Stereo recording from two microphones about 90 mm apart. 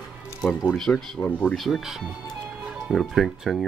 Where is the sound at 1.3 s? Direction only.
20° left (ahead or behind).